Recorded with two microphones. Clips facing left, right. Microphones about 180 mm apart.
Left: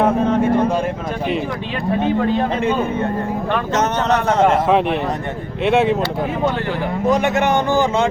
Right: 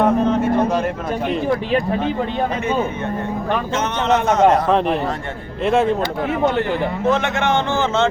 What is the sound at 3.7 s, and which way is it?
Speech, 40° left (ahead or behind).